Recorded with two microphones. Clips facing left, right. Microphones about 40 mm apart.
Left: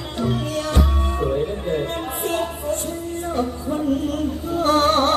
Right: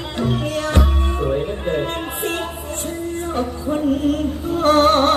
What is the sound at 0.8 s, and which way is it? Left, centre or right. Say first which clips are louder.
Music: right 1 dB; right.